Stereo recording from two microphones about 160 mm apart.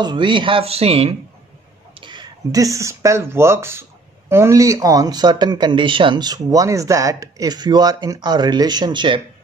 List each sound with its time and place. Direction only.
0.0 s speech: 30° right (ahead or behind)
2.0 s speech: 30° right (ahead or behind)